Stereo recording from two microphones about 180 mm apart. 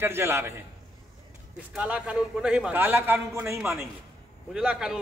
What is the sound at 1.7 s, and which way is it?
A man's voice, 5° right (ahead or behind).